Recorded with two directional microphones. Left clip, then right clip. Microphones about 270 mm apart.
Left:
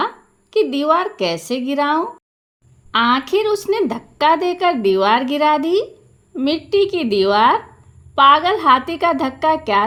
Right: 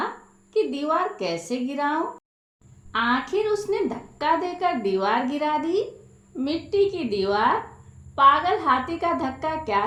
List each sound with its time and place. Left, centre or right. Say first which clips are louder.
0.5 s a woman's voice: left 8 dB; left